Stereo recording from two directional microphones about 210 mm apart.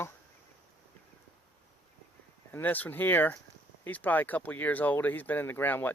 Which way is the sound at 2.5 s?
10° left (ahead or behind).